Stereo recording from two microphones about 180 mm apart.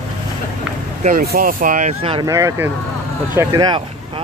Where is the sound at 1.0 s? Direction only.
55° right (ahead or behind).